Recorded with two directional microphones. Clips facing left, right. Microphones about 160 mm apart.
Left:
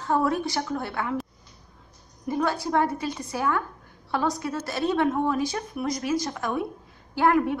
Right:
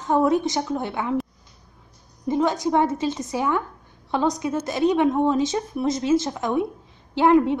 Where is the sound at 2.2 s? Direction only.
20° right (ahead or behind).